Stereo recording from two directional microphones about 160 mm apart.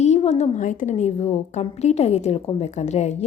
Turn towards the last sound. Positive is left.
turn(degrees=45)  # may be behind; listen again after turning